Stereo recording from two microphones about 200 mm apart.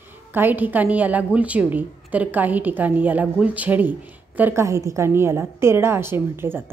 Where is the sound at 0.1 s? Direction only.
10° right (ahead or behind).